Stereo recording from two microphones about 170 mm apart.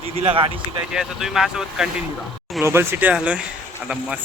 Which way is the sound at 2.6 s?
15° right (ahead or behind).